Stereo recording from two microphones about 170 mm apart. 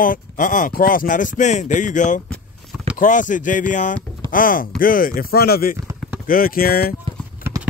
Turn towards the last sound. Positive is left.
turn(degrees=-10)  # may be behind; listen again after turning